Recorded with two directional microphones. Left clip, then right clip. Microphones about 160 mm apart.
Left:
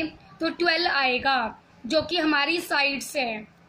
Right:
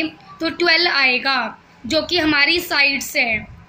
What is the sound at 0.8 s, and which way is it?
A woman's voice, 40° left (ahead or behind).